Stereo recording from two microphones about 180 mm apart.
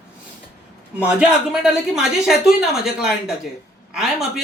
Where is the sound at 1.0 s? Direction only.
5° right (ahead or behind).